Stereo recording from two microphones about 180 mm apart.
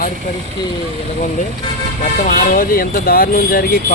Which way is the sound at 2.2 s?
50° left (ahead or behind).